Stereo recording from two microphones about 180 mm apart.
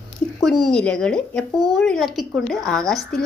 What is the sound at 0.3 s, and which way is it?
Speech, centre (ahead or behind).